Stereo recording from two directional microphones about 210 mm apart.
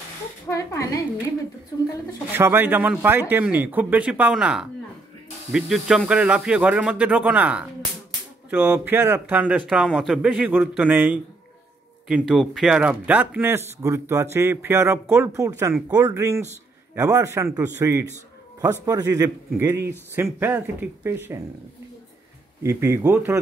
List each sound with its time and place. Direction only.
0.5 s a woman's voice: 15° left (ahead or behind)
2.3 s speech: 10° right (ahead or behind)
12.2 s speech: centre (ahead or behind)
22.6 s speech: 10° right (ahead or behind)